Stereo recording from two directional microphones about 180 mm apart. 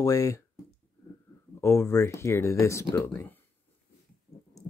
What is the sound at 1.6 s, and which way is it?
Speech, 15° left (ahead or behind).